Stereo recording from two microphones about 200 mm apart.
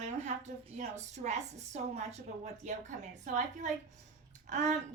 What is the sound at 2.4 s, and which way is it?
A woman's voice, 35° right (ahead or behind).